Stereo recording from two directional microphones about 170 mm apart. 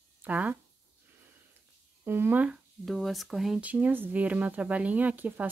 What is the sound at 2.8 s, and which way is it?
Speech, centre (ahead or behind).